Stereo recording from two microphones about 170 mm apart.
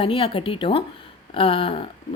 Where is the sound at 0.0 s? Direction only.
30° left (ahead or behind).